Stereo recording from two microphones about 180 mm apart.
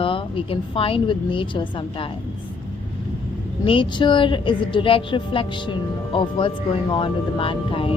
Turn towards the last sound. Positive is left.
turn(degrees=30)  # may be behind; listen again after turning